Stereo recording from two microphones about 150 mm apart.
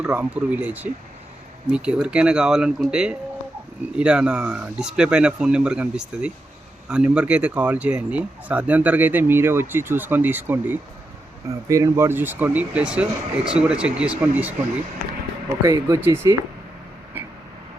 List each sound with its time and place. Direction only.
0.0 s speech: 10° right (ahead or behind)
15.6 s speech: 20° right (ahead or behind)
17.2 s vehicle: 10° right (ahead or behind)